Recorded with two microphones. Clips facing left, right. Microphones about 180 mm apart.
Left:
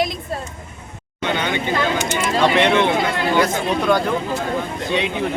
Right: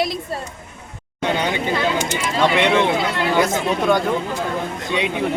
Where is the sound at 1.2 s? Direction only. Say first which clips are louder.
Right 1 dB; 35° right (ahead or behind).